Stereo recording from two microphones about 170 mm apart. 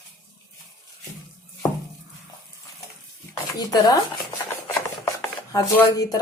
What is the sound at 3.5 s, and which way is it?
Speech, 25° left (ahead or behind).